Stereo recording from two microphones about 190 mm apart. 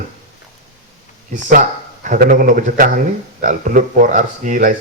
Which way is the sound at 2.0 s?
45° right (ahead or behind).